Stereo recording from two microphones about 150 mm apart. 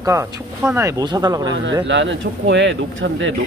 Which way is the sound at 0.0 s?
20° right (ahead or behind).